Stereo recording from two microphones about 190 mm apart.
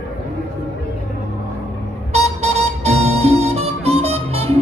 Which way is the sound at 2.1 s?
35° right (ahead or behind).